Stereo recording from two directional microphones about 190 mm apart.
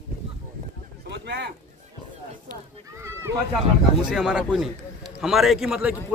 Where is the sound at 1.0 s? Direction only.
65° right (ahead or behind).